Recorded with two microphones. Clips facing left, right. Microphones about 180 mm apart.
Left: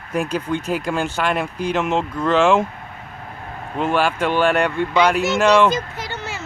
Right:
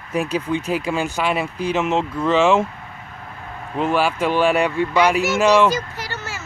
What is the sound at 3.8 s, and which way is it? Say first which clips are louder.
Speech: even; 5° right (ahead or behind).